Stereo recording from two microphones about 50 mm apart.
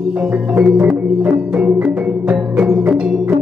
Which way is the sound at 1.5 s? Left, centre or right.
Right.